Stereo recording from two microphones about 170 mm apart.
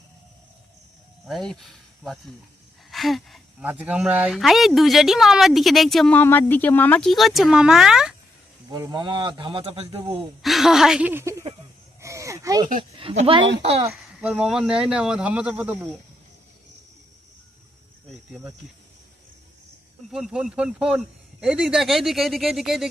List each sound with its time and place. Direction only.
1.2 s speech: centre (ahead or behind)
8.7 s speech: 25° right (ahead or behind)
10.4 s speech: centre (ahead or behind)
11.9 s a sound: 15° right (ahead or behind)
13.0 s speech: 35° right (ahead or behind)
13.9 s speech: 5° right (ahead or behind)
18.1 s speech: centre (ahead or behind)
20.1 s speech: 5° right (ahead or behind)